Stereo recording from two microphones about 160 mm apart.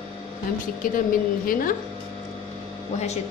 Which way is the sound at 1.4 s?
60° left (ahead or behind).